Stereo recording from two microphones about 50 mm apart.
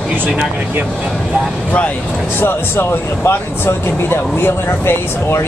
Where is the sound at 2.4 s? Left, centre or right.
Left.